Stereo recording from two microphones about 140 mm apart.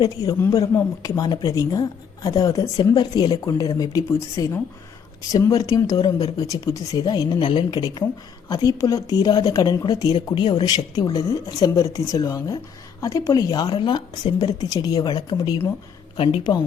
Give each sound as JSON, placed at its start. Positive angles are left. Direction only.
{"t": 0.0, "sound": "speech", "side_deg": 25}